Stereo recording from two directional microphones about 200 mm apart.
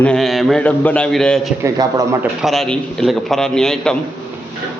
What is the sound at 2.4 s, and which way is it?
A man's voice, centre (ahead or behind).